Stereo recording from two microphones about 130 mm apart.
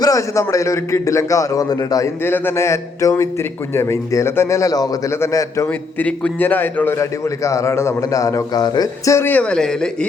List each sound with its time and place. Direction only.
0.0 s a man's voice: 25° left (ahead or behind)
2.2 s a man's voice: 15° left (ahead or behind)
5.6 s a man's voice: 10° left (ahead or behind)